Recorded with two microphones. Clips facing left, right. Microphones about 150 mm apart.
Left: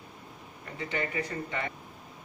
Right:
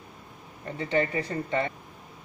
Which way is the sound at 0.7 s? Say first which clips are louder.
Right 6 dB; 30° right (ahead or behind).